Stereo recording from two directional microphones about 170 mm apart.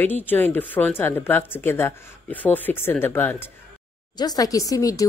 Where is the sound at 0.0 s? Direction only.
10° left (ahead or behind).